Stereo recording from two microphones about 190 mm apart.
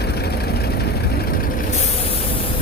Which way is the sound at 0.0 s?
60° left (ahead or behind).